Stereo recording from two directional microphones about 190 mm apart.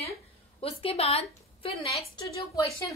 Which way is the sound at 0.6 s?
30° left (ahead or behind).